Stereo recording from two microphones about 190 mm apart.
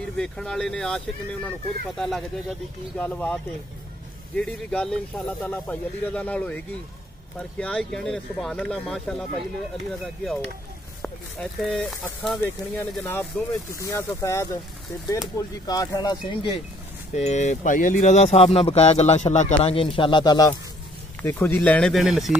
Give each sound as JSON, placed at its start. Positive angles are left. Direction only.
{"t": 0.2, "sound": "speech", "side_deg": 5}
{"t": 4.4, "sound": "speech", "side_deg": 5}
{"t": 11.0, "sound": "speech", "side_deg": 5}
{"t": 17.1, "sound": "speech", "side_deg": 35}